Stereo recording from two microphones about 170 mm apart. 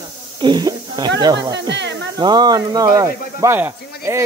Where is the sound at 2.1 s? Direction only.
25° right (ahead or behind).